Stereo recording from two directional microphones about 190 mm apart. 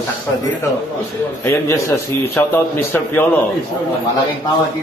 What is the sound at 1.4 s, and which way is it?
Speech, 15° left (ahead or behind).